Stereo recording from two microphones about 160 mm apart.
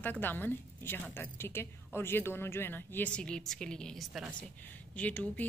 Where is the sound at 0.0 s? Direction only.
10° left (ahead or behind).